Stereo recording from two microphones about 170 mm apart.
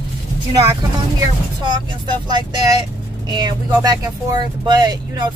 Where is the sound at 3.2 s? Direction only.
25° right (ahead or behind).